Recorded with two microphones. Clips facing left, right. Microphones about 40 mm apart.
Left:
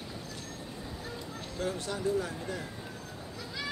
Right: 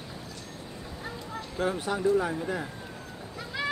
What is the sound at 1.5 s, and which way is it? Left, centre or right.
Speech, centre.